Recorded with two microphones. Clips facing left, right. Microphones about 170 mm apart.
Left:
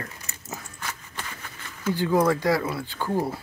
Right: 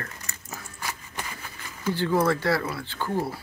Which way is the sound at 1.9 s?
15° left (ahead or behind).